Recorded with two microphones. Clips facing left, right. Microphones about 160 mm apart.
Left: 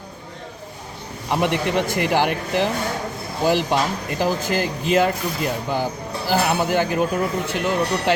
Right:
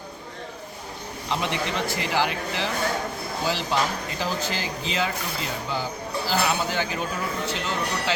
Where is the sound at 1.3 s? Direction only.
55° left (ahead or behind).